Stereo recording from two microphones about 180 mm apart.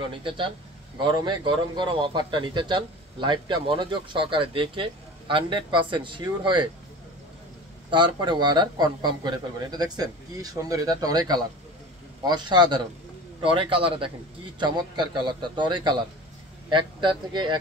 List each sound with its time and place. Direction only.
0.1 s speech: 30° right (ahead or behind)
7.9 s speech: 25° right (ahead or behind)